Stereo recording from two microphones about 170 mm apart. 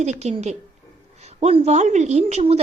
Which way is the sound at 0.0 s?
40° right (ahead or behind).